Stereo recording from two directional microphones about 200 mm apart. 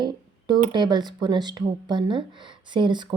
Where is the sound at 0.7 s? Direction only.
20° right (ahead or behind).